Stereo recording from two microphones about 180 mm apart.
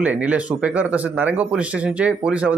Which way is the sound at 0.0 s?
10° right (ahead or behind).